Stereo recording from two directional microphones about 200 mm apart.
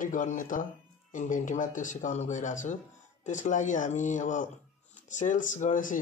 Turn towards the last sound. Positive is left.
turn(degrees=40)  # may be behind; listen again after turning